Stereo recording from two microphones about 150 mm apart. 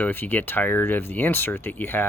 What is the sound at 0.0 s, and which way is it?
Speech, 15° left (ahead or behind).